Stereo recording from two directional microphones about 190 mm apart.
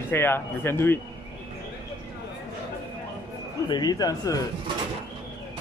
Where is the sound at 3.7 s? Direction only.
20° left (ahead or behind).